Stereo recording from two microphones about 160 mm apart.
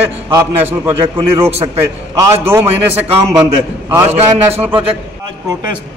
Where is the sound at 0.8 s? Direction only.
30° right (ahead or behind).